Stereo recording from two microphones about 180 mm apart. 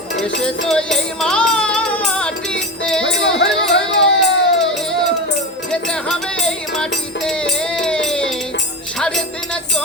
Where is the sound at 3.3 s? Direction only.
80° left.